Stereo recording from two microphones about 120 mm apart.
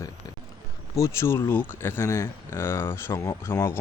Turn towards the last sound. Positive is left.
turn(degrees=20)  # may be behind; listen again after turning